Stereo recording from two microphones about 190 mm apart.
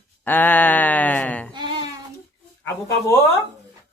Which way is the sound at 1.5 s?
25° right (ahead or behind).